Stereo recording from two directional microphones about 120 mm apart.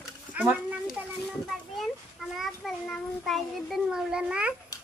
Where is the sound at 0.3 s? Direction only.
10° right (ahead or behind).